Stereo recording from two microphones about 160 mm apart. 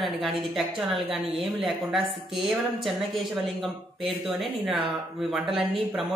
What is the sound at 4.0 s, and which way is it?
Speech, 35° right (ahead or behind).